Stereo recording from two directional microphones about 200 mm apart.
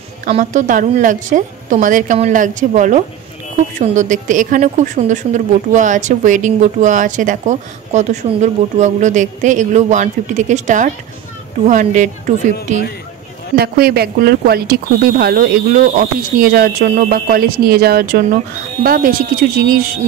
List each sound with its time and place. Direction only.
0.2 s speech: 40° right (ahead or behind)
13.6 s speech: 50° right (ahead or behind)